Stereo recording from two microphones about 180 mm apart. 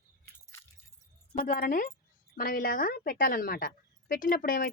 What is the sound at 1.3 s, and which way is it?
Speech, 50° left (ahead or behind).